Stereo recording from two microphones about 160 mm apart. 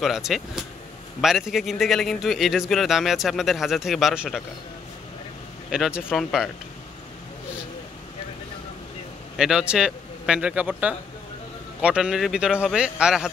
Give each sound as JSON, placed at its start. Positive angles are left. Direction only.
{"t": 0.0, "sound": "speech", "side_deg": 0}
{"t": 5.7, "sound": "speech", "side_deg": -5}
{"t": 9.4, "sound": "a man's voice", "side_deg": -5}